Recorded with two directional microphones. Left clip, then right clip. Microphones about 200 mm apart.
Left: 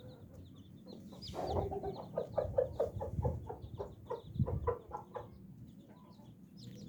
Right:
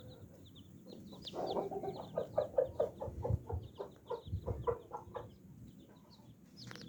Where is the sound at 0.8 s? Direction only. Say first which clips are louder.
Right 1 dB; 5° left (ahead or behind).